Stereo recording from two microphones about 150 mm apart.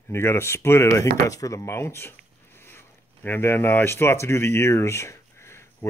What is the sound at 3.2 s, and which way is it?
Speech, 15° left (ahead or behind).